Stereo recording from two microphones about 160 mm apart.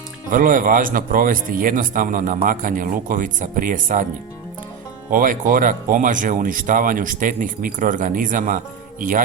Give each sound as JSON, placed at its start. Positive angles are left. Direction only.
{"t": 0.3, "sound": "speech", "side_deg": -55}
{"t": 5.1, "sound": "speech", "side_deg": -55}